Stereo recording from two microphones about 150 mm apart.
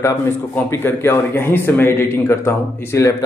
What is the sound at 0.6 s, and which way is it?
A man's voice, 15° left (ahead or behind).